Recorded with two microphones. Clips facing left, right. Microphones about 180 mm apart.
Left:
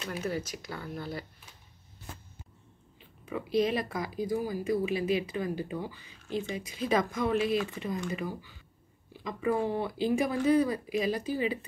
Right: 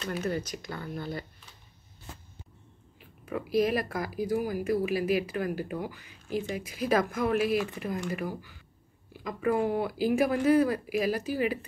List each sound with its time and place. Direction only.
0.0 s speech: 5° left (ahead or behind)
3.3 s speech: 5° right (ahead or behind)